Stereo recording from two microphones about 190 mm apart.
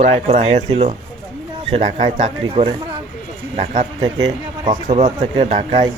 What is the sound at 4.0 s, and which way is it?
Speech, 20° right (ahead or behind).